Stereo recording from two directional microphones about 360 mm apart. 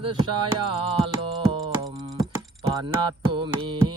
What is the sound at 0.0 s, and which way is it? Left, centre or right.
Music, centre.